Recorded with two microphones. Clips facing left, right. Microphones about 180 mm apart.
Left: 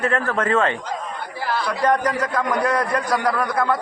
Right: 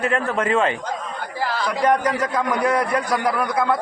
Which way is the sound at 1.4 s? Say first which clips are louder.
Even; 90° right.